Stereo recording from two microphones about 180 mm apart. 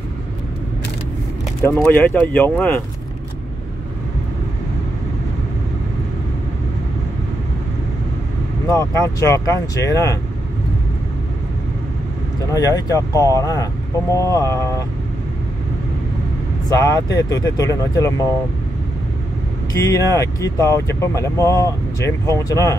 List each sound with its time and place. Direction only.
1.6 s speech: 10° left (ahead or behind)
8.6 s speech: 20° left (ahead or behind)
12.5 s speech: 20° left (ahead or behind)
16.6 s speech: 20° left (ahead or behind)
19.7 s speech: 20° left (ahead or behind)